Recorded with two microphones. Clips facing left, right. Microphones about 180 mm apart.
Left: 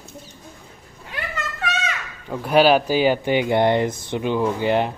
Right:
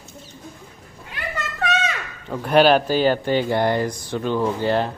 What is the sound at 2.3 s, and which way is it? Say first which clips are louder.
Speech: even; 5° left (ahead or behind).